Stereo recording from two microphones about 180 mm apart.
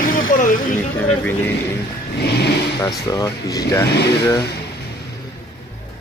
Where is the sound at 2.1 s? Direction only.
65° left (ahead or behind).